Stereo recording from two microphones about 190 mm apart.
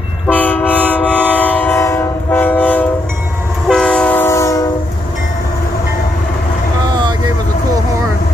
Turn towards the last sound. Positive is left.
turn(degrees=-20)  # may be behind; listen again after turning